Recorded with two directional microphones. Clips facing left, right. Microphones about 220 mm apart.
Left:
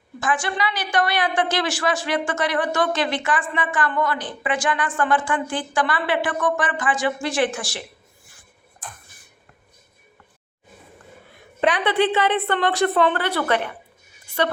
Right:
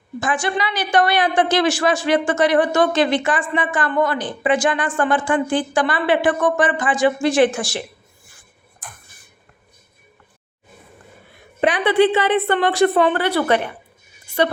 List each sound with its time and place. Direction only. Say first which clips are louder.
0.2 s a woman's voice: right 2 dB; 15° right (ahead or behind)
11.6 s a woman's voice: right 4 dB; 10° right (ahead or behind)